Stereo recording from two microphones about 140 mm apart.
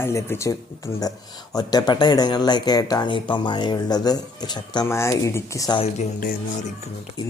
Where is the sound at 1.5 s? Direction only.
30° left (ahead or behind).